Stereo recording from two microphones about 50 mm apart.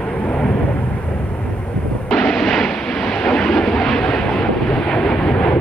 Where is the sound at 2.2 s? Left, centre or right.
Centre.